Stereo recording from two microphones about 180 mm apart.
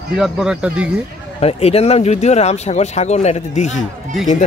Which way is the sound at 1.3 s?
35° left (ahead or behind).